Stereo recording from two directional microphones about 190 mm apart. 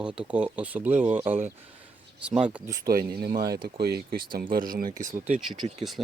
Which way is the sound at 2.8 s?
50° right (ahead or behind).